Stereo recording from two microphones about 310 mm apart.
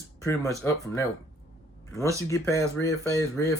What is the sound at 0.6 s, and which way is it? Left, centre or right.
Speech, centre.